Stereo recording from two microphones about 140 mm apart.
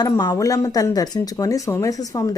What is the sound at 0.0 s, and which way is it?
Speech, 30° left (ahead or behind).